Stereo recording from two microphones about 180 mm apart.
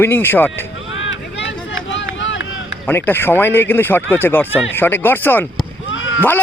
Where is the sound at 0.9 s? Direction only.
85° left.